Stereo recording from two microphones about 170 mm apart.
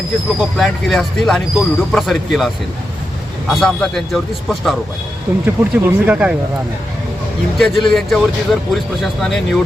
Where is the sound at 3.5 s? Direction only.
Centre (ahead or behind).